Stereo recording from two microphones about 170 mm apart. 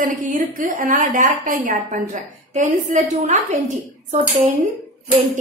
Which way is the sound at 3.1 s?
45° right (ahead or behind).